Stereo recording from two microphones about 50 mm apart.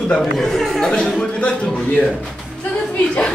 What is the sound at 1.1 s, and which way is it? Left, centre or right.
Speech, left.